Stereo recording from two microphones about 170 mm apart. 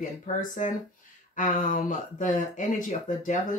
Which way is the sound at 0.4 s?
50° left (ahead or behind).